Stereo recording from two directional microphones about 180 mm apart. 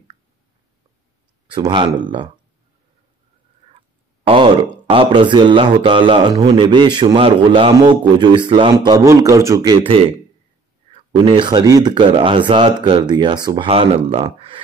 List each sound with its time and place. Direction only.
1.5 s a man's voice: 25° right (ahead or behind)
4.8 s a man's voice: 30° right (ahead or behind)